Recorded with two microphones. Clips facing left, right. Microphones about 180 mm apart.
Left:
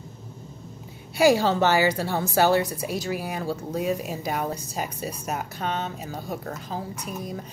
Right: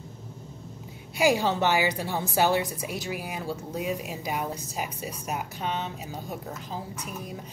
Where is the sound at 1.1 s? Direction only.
15° right (ahead or behind).